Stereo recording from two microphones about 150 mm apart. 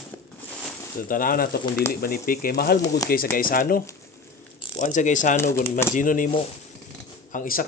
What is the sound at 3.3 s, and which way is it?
Speech, 70° left (ahead or behind).